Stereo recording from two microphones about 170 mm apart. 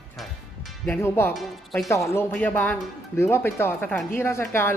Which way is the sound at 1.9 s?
15° left (ahead or behind).